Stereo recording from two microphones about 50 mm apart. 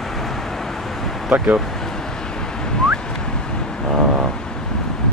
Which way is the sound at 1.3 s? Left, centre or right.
Right.